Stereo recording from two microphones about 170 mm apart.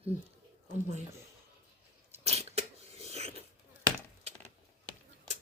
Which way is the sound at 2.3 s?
40° right (ahead or behind).